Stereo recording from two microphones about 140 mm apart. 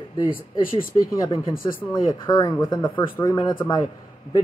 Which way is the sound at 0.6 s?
80° left.